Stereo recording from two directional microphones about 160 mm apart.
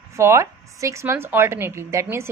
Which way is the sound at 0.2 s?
15° right (ahead or behind).